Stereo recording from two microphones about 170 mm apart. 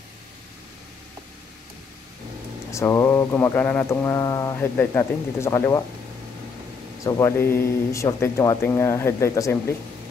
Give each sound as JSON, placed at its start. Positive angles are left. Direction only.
{"t": 2.7, "sound": "speech", "side_deg": 15}
{"t": 7.1, "sound": "speech", "side_deg": 15}